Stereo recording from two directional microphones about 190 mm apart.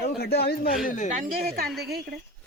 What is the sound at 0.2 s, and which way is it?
Speech, 55° left (ahead or behind).